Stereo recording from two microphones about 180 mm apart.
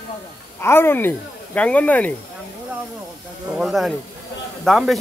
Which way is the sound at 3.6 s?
Centre (ahead or behind).